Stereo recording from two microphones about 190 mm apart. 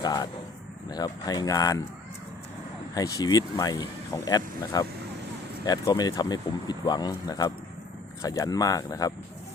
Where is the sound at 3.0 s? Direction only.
20° left (ahead or behind).